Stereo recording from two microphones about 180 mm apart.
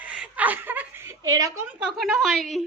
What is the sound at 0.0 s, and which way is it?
Chuckle, 5° right (ahead or behind).